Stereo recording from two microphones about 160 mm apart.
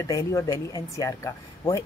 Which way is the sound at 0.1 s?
20° left (ahead or behind).